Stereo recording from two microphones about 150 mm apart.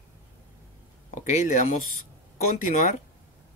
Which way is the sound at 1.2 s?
55° left (ahead or behind).